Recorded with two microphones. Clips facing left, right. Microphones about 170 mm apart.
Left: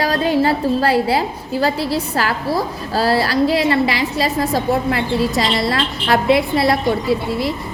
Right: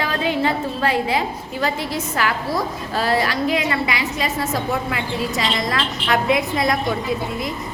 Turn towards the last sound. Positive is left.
turn(degrees=30)  # may be behind; listen again after turning